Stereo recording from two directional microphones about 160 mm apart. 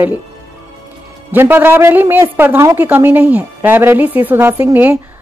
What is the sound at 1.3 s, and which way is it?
Speech, 10° right (ahead or behind).